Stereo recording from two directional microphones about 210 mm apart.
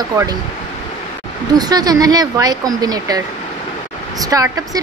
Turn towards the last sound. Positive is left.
turn(degrees=-15)  # may be behind; listen again after turning